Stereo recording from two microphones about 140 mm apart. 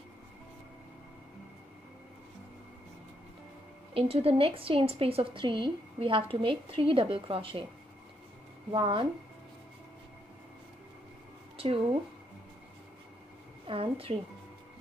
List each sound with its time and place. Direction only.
3.9 s a woman's voice: 45° right (ahead or behind)
8.7 s a woman's voice: 40° right (ahead or behind)
11.5 s speech: 40° right (ahead or behind)
13.7 s a woman's voice: 40° right (ahead or behind)